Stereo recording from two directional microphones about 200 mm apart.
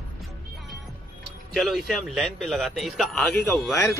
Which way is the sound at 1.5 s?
Centre (ahead or behind).